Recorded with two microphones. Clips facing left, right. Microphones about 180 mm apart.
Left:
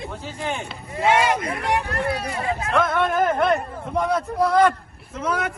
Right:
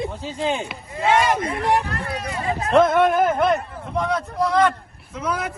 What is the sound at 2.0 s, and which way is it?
Speech, 35° left (ahead or behind).